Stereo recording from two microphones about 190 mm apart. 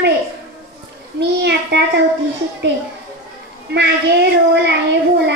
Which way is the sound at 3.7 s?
60° right (ahead or behind).